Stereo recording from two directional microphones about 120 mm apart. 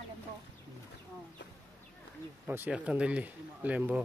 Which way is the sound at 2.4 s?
15° right (ahead or behind).